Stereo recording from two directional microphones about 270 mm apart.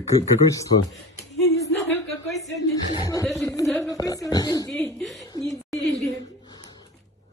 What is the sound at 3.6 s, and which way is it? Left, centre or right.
Speech, centre.